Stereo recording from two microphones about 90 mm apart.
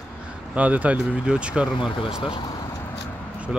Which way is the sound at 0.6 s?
15° right (ahead or behind).